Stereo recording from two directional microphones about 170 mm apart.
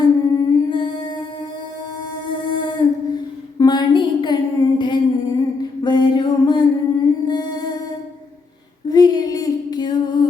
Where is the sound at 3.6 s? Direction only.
25° left (ahead or behind).